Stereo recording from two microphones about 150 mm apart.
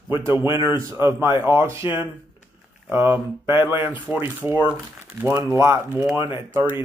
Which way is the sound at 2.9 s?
15° right (ahead or behind).